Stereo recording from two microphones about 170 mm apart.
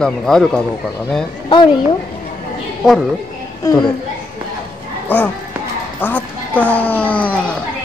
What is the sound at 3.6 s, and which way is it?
Speech, 20° left (ahead or behind).